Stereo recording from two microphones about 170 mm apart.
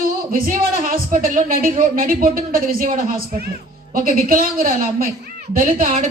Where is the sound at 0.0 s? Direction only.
55° right (ahead or behind).